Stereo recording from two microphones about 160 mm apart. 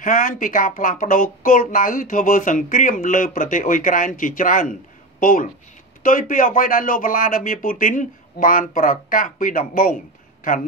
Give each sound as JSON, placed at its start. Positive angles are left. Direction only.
{"t": 0.0, "sound": "speech", "side_deg": 55}